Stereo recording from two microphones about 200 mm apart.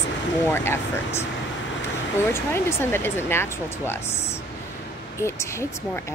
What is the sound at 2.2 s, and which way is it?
Speech, 10° left (ahead or behind).